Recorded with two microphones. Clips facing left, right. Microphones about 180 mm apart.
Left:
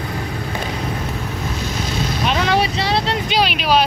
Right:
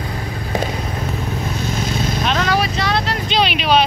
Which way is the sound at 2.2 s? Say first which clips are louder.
Left 1 dB; 10° left (ahead or behind).